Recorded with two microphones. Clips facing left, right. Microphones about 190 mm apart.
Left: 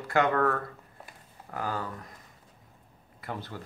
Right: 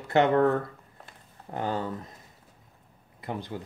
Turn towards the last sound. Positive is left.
turn(degrees=-20)  # may be behind; listen again after turning